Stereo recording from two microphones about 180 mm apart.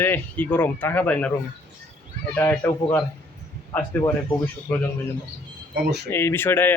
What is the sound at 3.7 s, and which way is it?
Speech, 10° left (ahead or behind).